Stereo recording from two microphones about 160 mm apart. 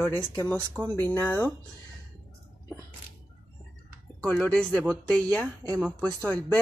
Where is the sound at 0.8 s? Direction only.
10° left (ahead or behind).